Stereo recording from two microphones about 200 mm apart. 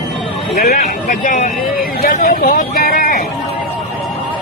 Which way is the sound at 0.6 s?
50° left (ahead or behind).